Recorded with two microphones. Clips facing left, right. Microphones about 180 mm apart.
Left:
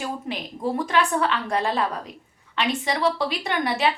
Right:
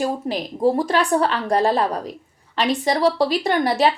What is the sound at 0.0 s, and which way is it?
A woman's voice, 40° right (ahead or behind).